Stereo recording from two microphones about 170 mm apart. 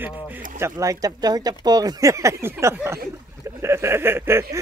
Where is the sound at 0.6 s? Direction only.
20° right (ahead or behind).